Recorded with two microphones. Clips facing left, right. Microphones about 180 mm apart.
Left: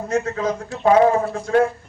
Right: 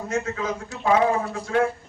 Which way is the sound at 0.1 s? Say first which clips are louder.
Left 5 dB; 35° left (ahead or behind).